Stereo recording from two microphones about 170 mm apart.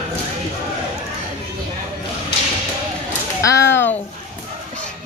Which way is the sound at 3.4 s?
20° left (ahead or behind).